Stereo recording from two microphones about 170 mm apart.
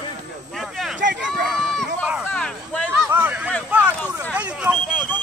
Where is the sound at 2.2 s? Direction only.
5° left (ahead or behind).